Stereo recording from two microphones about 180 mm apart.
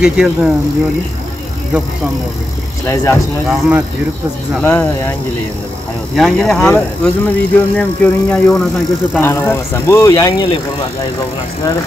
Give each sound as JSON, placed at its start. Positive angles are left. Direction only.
{"t": 0.0, "sound": "speech", "side_deg": -5}
{"t": 2.9, "sound": "speech", "side_deg": 15}
{"t": 3.4, "sound": "speech", "side_deg": -5}
{"t": 4.6, "sound": "speech", "side_deg": 10}
{"t": 6.1, "sound": "speech", "side_deg": 5}